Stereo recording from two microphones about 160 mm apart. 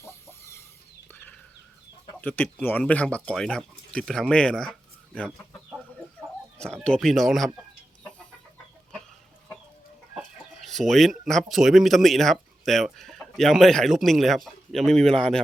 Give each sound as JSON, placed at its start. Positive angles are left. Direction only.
{"t": 0.0, "sound": "chicken", "side_deg": 15}
{"t": 1.0, "sound": "a sound", "side_deg": 10}
{"t": 2.2, "sound": "speech", "side_deg": 10}
{"t": 6.8, "sound": "speech", "side_deg": 5}
{"t": 10.7, "sound": "speech", "side_deg": 0}